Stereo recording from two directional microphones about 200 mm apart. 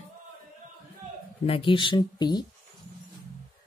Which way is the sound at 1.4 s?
25° left (ahead or behind).